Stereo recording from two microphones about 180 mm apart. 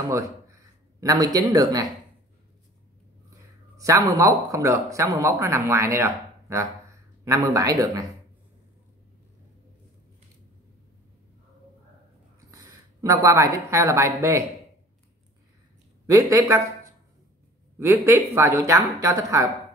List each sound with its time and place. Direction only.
0.1 s speech: 15° right (ahead or behind)
3.7 s a man's voice: 20° right (ahead or behind)
12.4 s a woman's voice: 20° right (ahead or behind)
16.1 s a man's voice: 20° right (ahead or behind)